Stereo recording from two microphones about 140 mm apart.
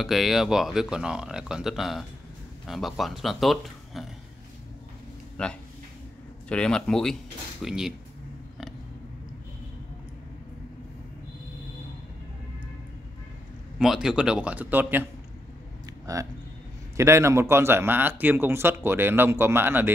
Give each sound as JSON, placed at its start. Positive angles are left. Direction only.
{"t": 0.0, "sound": "speech", "side_deg": 0}
{"t": 5.4, "sound": "speech", "side_deg": 5}
{"t": 13.7, "sound": "a man's voice", "side_deg": -5}
{"t": 16.1, "sound": "a man's voice", "side_deg": -25}